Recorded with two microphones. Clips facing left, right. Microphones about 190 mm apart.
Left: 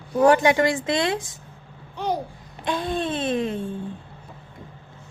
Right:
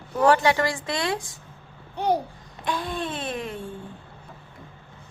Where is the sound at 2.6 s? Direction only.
25° left (ahead or behind).